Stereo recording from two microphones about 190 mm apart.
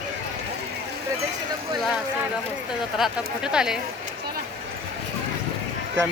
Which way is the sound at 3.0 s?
5° right (ahead or behind).